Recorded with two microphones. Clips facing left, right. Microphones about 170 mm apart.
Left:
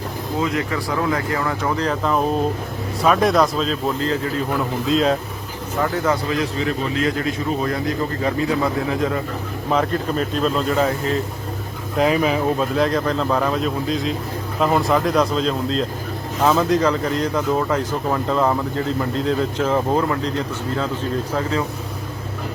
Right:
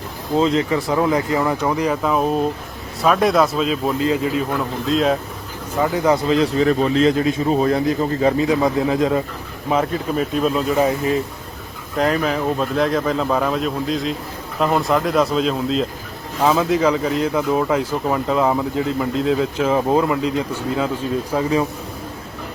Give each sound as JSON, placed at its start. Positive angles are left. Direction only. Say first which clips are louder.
{"t": 0.3, "sound": "speech", "louder": "right 6 dB", "side_deg": -25}
{"t": 4.4, "sound": "speech", "louder": "even", "side_deg": 0}
{"t": 5.8, "sound": "speech", "louder": "right 4 dB", "side_deg": -15}
{"t": 9.6, "sound": "speech", "louder": "right 1 dB", "side_deg": -5}
{"t": 11.9, "sound": "speech", "louder": "left 1 dB", "side_deg": 5}